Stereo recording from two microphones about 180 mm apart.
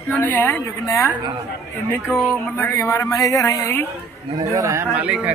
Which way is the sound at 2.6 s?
15° left (ahead or behind).